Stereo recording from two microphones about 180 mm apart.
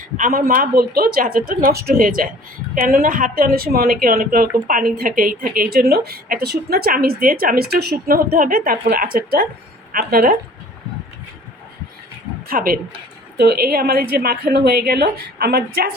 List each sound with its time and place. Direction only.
0.2 s a woman's voice: 50° right (ahead or behind)
12.5 s a woman's voice: 55° right (ahead or behind)
13.3 s a woman's voice: 65° right (ahead or behind)